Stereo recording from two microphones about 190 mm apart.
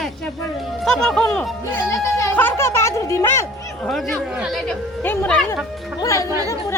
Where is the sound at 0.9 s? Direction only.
5° left (ahead or behind).